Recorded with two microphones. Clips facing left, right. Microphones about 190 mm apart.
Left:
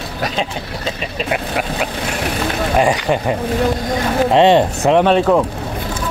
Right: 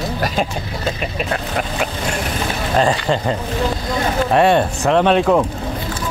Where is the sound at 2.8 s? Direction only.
10° left (ahead or behind).